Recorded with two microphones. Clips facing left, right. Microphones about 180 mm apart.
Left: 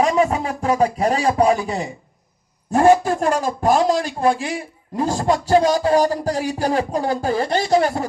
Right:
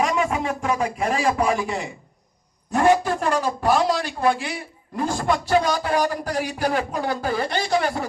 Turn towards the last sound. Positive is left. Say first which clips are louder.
# left 5 dB
turn(degrees=25)  # may be behind; listen again after turning